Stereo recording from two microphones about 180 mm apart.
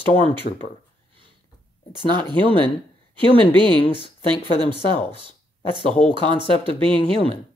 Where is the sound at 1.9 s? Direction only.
25° right (ahead or behind).